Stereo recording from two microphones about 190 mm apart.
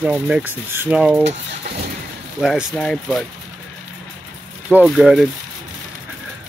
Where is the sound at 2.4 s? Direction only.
Centre (ahead or behind).